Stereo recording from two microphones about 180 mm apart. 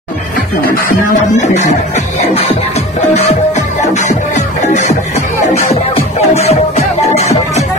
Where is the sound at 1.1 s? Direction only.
40° left (ahead or behind).